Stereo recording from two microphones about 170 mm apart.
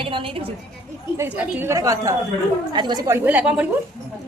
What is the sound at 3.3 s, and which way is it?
Speech, 10° right (ahead or behind).